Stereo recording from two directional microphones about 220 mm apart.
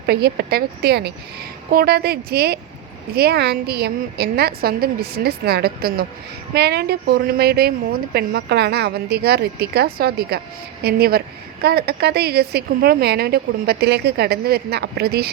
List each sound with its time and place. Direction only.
0.0 s a woman's voice: 45° right (ahead or behind)